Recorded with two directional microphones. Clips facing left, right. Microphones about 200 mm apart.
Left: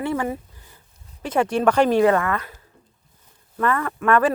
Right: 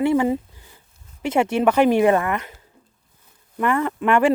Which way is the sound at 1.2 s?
10° right (ahead or behind).